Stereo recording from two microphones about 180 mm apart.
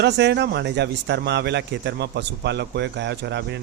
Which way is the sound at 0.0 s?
70° right (ahead or behind).